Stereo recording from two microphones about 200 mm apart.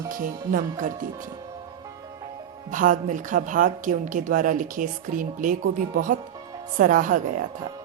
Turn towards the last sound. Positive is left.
turn(degrees=-40)  # may be behind; listen again after turning